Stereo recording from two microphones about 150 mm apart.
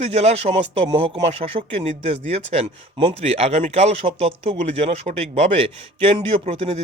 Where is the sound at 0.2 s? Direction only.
45° right (ahead or behind).